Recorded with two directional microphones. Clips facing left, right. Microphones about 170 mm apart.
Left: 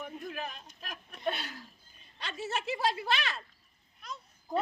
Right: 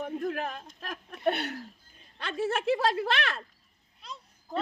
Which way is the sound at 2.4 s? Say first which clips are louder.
Right 6 dB; 55° right (ahead or behind).